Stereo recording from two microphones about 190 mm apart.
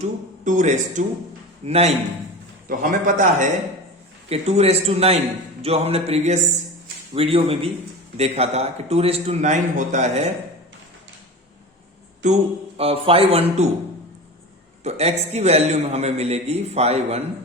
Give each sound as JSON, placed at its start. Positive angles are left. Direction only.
{"t": 0.4, "sound": "a man's voice", "side_deg": -40}
{"t": 4.3, "sound": "a man's voice", "side_deg": -35}
{"t": 12.2, "sound": "a man's voice", "side_deg": -35}
{"t": 14.8, "sound": "a man's voice", "side_deg": -35}